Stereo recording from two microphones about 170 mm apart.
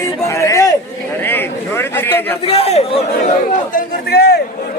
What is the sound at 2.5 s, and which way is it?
Speech, 35° left (ahead or behind).